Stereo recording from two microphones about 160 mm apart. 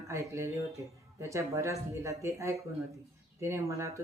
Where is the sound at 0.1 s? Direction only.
20° right (ahead or behind).